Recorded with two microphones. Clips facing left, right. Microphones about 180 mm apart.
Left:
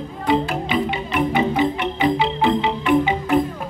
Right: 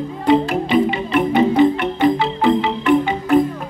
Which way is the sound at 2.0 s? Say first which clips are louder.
Right 3 dB; 15° left (ahead or behind).